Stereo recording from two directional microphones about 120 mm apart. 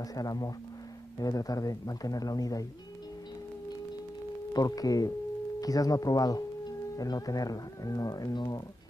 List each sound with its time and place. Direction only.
0.1 s speech: 30° left (ahead or behind)
4.6 s speech: 30° left (ahead or behind)